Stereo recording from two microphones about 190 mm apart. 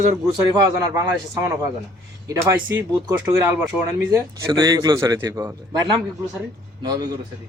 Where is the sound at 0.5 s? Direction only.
20° right (ahead or behind).